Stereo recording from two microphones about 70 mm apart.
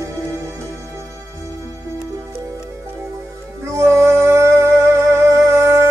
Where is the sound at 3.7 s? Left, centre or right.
Right.